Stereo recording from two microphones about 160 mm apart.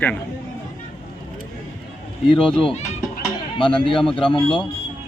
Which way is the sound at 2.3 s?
30° left (ahead or behind).